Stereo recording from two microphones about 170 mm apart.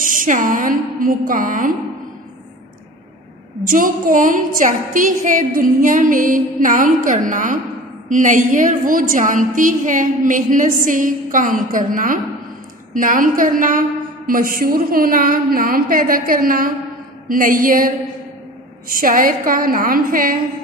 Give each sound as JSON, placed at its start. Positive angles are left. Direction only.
{"t": 0.0, "sound": "a woman's voice", "side_deg": -55}
{"t": 3.6, "sound": "a woman's voice", "side_deg": -55}